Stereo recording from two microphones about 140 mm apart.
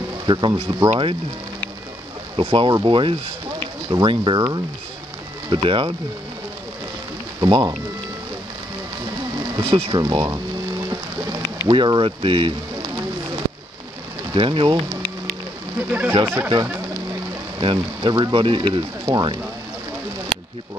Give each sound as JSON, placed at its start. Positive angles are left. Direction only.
{"t": 0.3, "sound": "speech", "side_deg": -35}
{"t": 2.3, "sound": "speech", "side_deg": -40}
{"t": 7.3, "sound": "speech", "side_deg": -30}
{"t": 9.7, "sound": "speech", "side_deg": -40}
{"t": 10.0, "sound": "speech", "side_deg": -25}
{"t": 11.6, "sound": "speech", "side_deg": -35}
{"t": 14.3, "sound": "speech", "side_deg": -40}
{"t": 15.9, "sound": "speech", "side_deg": -15}
{"t": 17.6, "sound": "speech", "side_deg": -35}